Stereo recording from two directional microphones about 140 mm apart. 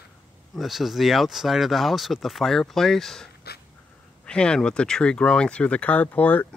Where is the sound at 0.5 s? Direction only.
Centre (ahead or behind).